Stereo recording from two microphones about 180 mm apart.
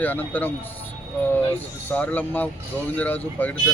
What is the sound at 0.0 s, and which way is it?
Speech, 10° left (ahead or behind).